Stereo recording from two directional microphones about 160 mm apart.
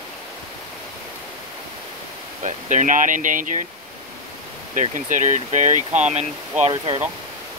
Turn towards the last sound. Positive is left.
turn(degrees=-40)  # may be behind; listen again after turning